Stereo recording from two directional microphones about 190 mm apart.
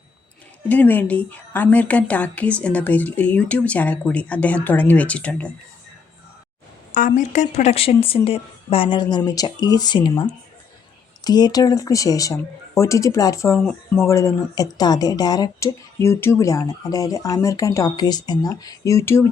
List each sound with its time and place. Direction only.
0.7 s speech: 10° left (ahead or behind)
7.2 s speech: 40° left (ahead or behind); by 13.6 s 15° left (ahead or behind)
13.7 s speech: centre (ahead or behind)
14.1 s speech: 15° left (ahead or behind)